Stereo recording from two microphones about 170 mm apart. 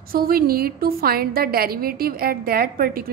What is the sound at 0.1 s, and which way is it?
A woman's voice, 60° right (ahead or behind).